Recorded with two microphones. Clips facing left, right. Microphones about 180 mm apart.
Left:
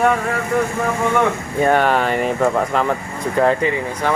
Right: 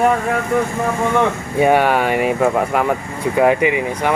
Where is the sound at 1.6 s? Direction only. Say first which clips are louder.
Right 2 dB; 10° right (ahead or behind).